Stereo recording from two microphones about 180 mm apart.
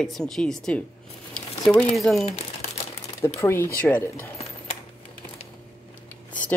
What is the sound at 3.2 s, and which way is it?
Speech, 15° left (ahead or behind).